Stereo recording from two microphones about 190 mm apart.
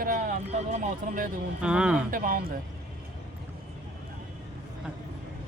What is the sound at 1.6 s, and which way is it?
Speech, 5° right (ahead or behind).